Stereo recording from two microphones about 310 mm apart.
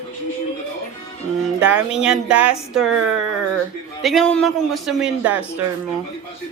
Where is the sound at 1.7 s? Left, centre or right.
Centre.